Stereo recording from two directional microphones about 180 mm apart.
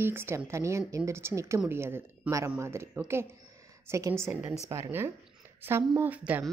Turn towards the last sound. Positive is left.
turn(degrees=-10)  # may be behind; listen again after turning